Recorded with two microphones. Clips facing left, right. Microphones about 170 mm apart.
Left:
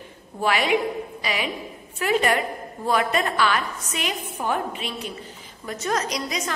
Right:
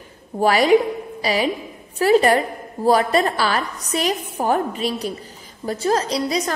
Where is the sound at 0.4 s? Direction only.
40° right (ahead or behind).